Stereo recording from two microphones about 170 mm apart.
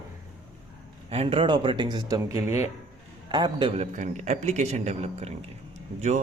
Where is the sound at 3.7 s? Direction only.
40° right (ahead or behind).